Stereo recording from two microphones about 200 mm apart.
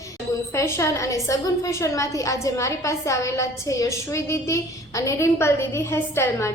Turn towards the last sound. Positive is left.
turn(degrees=15)  # may be behind; listen again after turning